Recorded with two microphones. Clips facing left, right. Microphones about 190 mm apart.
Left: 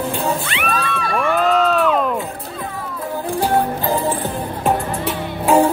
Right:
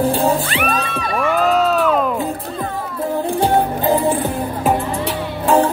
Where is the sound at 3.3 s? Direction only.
20° right (ahead or behind).